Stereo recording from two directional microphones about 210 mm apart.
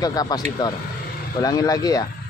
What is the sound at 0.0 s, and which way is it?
Speech, 20° left (ahead or behind).